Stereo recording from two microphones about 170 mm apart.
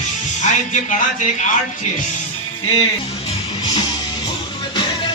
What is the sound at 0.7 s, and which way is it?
Speech, 45° left (ahead or behind).